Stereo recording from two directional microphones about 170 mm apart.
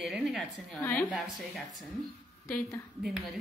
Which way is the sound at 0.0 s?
5° right (ahead or behind).